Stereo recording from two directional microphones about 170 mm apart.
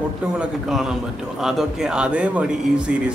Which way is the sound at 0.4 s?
5° right (ahead or behind).